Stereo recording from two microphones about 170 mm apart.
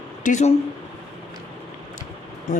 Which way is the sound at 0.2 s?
45° left (ahead or behind).